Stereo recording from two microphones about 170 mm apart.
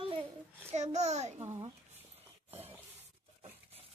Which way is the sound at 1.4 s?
20° right (ahead or behind).